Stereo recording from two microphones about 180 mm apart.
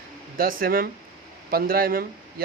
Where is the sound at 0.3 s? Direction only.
55° right (ahead or behind).